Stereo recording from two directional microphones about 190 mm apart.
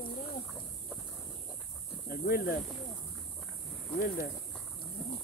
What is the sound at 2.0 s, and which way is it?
Speech, 50° left (ahead or behind).